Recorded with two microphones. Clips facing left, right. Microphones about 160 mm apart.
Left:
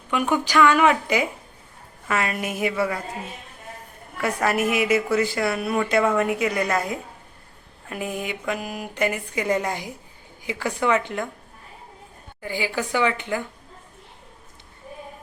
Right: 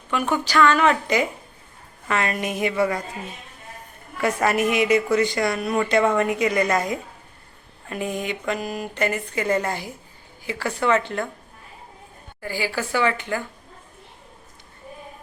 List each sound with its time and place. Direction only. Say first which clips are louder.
0.1 s a woman's voice: left 1 dB; 15° left (ahead or behind)
4.2 s a woman's voice: right 2 dB; centre (ahead or behind)
12.4 s a woman's voice: even; 20° left (ahead or behind)